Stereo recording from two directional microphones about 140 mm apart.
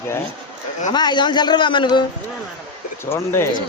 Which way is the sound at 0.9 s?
30° left (ahead or behind).